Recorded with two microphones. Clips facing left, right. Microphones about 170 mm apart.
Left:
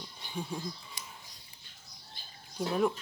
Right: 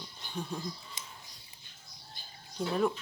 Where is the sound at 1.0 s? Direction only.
20° right (ahead or behind).